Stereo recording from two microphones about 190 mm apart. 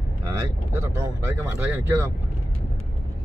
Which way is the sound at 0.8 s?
15° right (ahead or behind).